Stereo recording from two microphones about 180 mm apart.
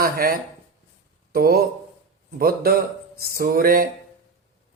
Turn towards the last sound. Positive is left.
turn(degrees=-55)  # may be behind; listen again after turning